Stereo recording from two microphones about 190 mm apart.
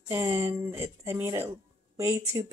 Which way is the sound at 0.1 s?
15° right (ahead or behind).